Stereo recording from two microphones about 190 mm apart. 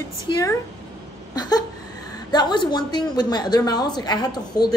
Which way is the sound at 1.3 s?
20° left (ahead or behind).